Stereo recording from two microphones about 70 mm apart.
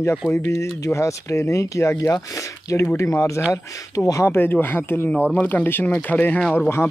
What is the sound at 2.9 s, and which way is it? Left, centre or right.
Speech, left.